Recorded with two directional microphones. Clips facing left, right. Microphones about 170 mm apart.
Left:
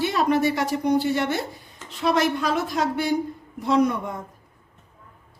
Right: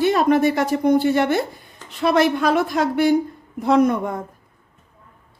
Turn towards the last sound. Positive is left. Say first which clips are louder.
# right 4 dB
turn(degrees=-50)  # may be behind; listen again after turning